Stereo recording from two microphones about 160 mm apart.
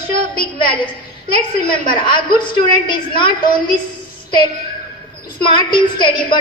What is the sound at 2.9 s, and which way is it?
Speech, 30° left (ahead or behind).